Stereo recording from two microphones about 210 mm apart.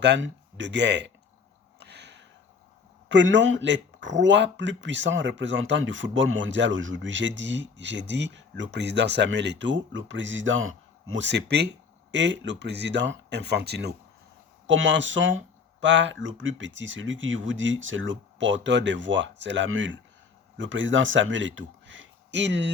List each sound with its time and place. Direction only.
0.0 s speech: 60° right (ahead or behind)
1.8 s a sound: 55° right (ahead or behind)
3.1 s speech: 60° right (ahead or behind)